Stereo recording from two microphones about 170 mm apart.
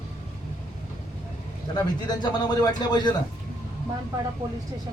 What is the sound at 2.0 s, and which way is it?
Speech, 25° left (ahead or behind).